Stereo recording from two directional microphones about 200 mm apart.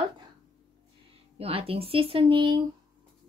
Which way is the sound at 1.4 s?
30° right (ahead or behind).